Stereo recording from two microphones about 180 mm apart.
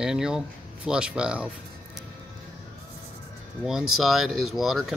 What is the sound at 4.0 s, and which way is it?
Speech, centre (ahead or behind).